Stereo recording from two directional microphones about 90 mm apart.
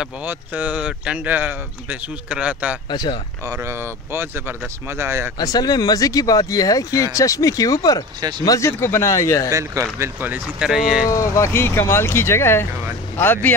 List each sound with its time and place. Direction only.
0.2 s speech: 20° right (ahead or behind)
2.9 s speech: 55° left (ahead or behind)
3.6 s speech: 30° right (ahead or behind)
5.4 s speech: 45° left (ahead or behind)
8.2 s speech: 55° right (ahead or behind)
8.5 s speech: 30° left (ahead or behind)
9.5 s speech: 35° right (ahead or behind)
10.6 s speech: 5° right (ahead or behind)
11.1 s speech: 35° left (ahead or behind)